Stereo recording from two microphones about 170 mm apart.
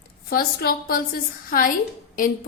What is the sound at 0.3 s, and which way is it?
A woman's voice, 60° left (ahead or behind).